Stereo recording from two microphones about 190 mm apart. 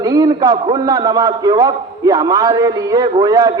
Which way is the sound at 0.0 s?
20° right (ahead or behind).